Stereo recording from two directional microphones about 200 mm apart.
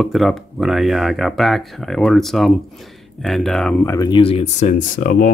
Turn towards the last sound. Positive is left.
turn(degrees=40)  # may be behind; listen again after turning